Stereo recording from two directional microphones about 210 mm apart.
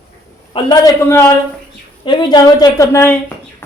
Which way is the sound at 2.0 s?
20° left (ahead or behind).